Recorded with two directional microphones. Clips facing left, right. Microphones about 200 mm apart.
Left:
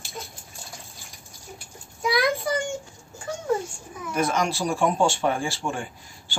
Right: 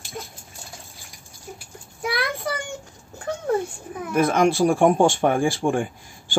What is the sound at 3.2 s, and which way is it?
Speech, 60° right (ahead or behind).